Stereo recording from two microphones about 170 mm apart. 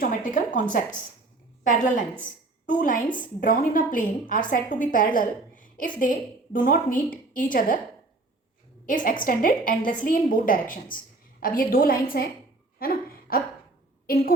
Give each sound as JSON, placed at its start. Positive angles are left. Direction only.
{"t": 0.0, "sound": "a woman's voice", "side_deg": 50}
{"t": 8.9, "sound": "a woman's voice", "side_deg": 50}
{"t": 12.8, "sound": "a sound", "side_deg": 60}
{"t": 14.1, "sound": "a woman's voice", "side_deg": 60}